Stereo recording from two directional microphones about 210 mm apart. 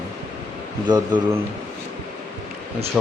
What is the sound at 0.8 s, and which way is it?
Speech, 20° right (ahead or behind).